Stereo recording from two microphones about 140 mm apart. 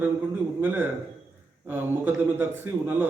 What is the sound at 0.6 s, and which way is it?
A man's voice, 15° right (ahead or behind).